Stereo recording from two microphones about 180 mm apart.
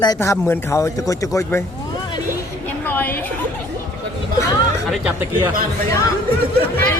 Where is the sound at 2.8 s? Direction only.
10° left (ahead or behind).